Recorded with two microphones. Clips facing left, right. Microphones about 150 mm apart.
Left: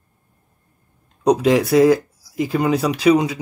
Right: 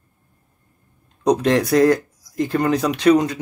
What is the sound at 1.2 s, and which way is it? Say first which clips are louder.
Speech: left 2 dB; 5° left (ahead or behind).